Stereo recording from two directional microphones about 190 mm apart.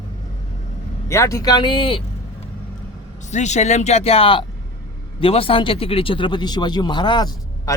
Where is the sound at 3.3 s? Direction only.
40° left (ahead or behind).